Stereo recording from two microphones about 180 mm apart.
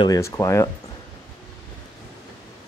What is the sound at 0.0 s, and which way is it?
Speech, 20° left (ahead or behind).